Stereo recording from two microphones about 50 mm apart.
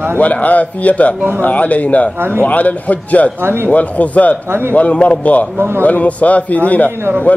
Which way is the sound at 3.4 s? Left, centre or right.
Right.